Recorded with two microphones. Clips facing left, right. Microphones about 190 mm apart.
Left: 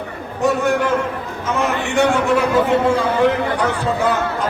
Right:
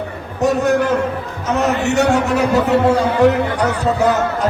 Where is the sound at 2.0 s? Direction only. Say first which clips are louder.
Left 2 dB; 40° right (ahead or behind).